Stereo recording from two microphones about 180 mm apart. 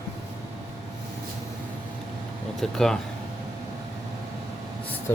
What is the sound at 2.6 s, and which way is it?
Speech, 5° left (ahead or behind).